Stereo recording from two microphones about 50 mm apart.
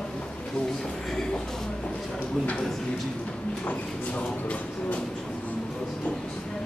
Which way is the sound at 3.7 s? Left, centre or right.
Left.